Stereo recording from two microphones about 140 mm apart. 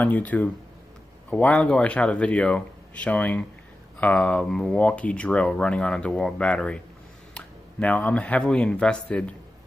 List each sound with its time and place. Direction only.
0.0 s speech: 10° left (ahead or behind)